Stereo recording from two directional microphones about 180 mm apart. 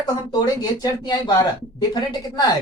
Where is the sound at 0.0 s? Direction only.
20° left (ahead or behind).